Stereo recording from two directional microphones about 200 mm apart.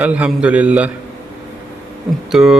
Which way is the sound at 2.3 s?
5° right (ahead or behind).